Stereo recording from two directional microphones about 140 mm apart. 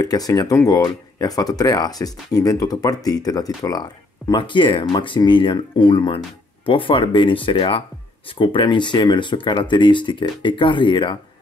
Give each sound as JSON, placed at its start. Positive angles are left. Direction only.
{"t": 0.0, "sound": "speech", "side_deg": 25}